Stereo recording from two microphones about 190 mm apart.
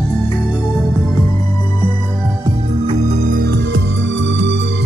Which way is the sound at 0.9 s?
15° left (ahead or behind).